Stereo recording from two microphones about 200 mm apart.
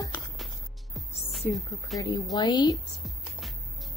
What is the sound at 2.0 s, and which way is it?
Speech, 15° left (ahead or behind).